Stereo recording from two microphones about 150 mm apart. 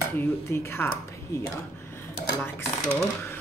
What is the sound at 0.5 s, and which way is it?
Speech, 15° left (ahead or behind).